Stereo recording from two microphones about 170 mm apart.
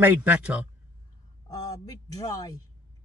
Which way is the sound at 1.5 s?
20° left (ahead or behind).